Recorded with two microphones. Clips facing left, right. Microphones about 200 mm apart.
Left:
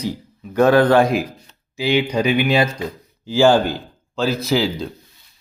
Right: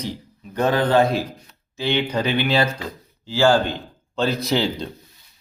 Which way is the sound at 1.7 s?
10° left (ahead or behind).